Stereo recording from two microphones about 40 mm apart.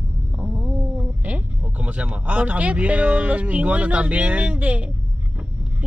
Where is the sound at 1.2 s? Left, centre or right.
Right.